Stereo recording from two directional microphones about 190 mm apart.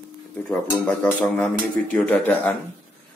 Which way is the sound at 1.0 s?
5° left (ahead or behind).